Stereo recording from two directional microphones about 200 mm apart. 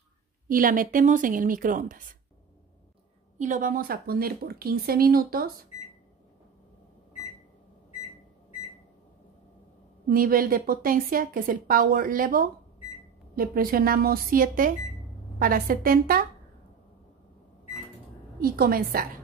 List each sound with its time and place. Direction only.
0.5 s a woman's voice: 45° right (ahead or behind)
3.3 s a woman's voice: 40° right (ahead or behind)
10.0 s a woman's voice: 45° right (ahead or behind)
18.4 s a woman's voice: 45° right (ahead or behind)